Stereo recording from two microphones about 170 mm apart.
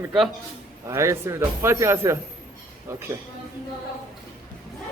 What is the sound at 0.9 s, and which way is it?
Speech, 15° right (ahead or behind).